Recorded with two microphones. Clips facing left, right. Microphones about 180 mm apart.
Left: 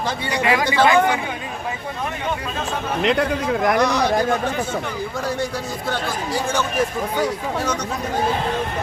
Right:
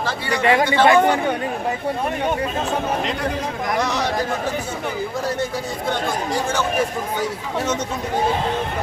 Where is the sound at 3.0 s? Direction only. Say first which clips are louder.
Left 4 dB; 65° left (ahead or behind).